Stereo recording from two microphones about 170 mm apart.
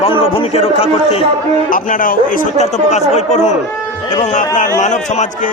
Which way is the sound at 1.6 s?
50° left (ahead or behind).